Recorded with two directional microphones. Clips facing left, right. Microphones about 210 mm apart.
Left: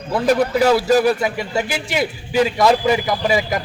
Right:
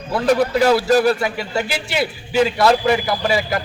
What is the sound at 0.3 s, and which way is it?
A man's voice, 5° left (ahead or behind).